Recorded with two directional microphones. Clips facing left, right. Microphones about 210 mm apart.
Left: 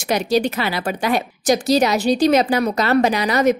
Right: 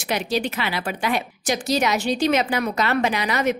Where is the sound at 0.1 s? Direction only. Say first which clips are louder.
Left 6 dB; 40° left (ahead or behind).